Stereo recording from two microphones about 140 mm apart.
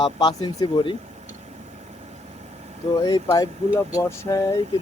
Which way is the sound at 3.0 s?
30° left (ahead or behind).